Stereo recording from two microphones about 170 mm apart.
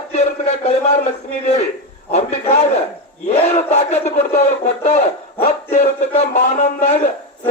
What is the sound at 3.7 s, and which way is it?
Speech, 45° left (ahead or behind).